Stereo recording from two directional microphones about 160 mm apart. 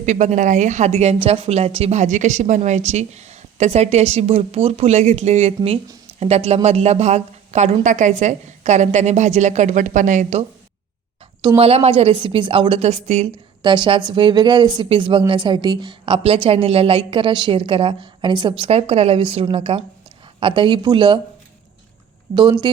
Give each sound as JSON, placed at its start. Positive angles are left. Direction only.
{"t": 0.0, "sound": "a woman's voice", "side_deg": -50}
{"t": 11.4, "sound": "a woman's voice", "side_deg": -35}
{"t": 22.4, "sound": "speech", "side_deg": -30}